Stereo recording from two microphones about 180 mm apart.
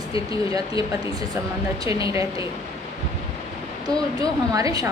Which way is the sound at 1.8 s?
20° right (ahead or behind).